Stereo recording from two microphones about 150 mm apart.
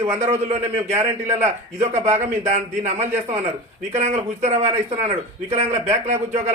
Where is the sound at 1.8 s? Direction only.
45° right (ahead or behind).